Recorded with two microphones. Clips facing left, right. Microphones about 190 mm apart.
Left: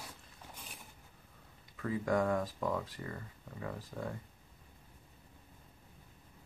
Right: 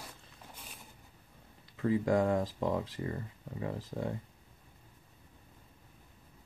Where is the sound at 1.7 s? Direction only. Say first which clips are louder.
Right 4 dB; 25° right (ahead or behind).